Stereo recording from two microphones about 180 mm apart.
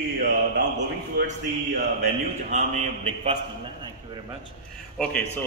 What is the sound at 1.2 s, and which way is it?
Speech, 60° right (ahead or behind).